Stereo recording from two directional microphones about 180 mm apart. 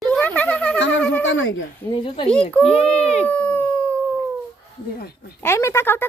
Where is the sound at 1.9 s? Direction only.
30° left (ahead or behind).